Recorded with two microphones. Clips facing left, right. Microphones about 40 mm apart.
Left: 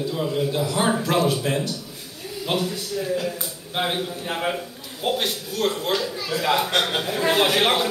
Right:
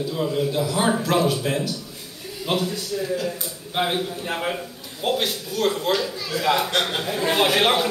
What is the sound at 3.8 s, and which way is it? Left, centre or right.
A man's voice, centre.